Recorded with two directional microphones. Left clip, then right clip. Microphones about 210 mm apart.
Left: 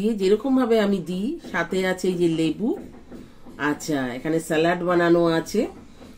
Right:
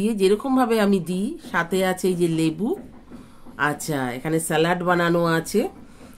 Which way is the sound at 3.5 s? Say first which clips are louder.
Right 1 dB; 55° right (ahead or behind).